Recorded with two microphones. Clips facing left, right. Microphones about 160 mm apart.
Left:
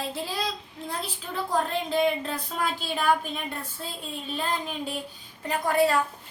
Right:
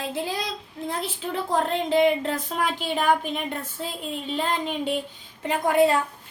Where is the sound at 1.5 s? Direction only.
25° right (ahead or behind).